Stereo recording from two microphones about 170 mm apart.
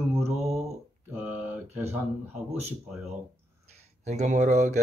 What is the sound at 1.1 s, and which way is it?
Speech, 10° right (ahead or behind).